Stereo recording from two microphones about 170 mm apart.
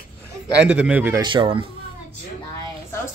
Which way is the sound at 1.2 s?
30° right (ahead or behind).